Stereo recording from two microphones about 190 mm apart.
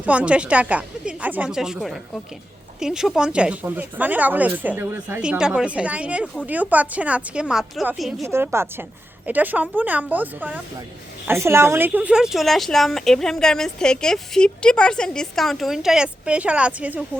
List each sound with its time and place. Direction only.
0.0 s speech: 5° right (ahead or behind)
8.3 s speech: 15° right (ahead or behind)